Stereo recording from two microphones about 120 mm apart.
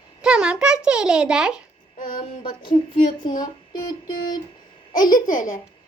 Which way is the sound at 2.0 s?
40° left (ahead or behind).